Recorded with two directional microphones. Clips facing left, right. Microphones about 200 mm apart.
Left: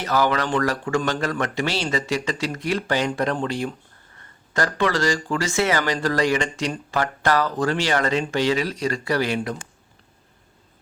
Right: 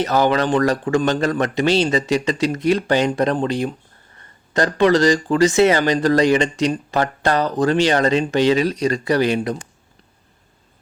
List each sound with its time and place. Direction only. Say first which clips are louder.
0.0 s speech: right 5 dB; 20° right (ahead or behind)